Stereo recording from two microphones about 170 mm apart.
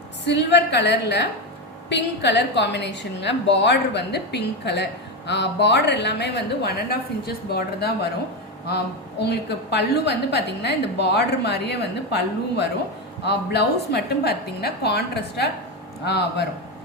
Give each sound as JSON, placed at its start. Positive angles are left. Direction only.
{"t": 0.3, "sound": "a woman's voice", "side_deg": 90}